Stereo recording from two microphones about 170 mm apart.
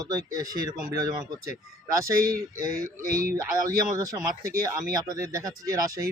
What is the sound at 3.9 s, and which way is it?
Speech, 20° right (ahead or behind).